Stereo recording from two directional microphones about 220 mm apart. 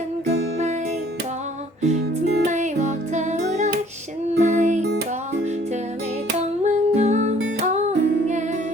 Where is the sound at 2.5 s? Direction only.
30° right (ahead or behind).